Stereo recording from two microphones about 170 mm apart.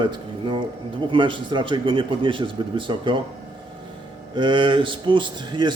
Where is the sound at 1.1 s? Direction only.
30° right (ahead or behind).